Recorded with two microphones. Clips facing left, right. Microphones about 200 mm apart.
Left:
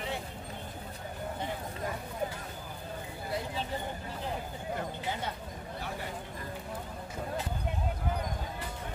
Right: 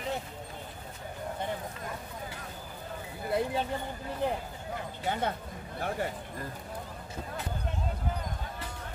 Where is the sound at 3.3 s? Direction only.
55° right (ahead or behind).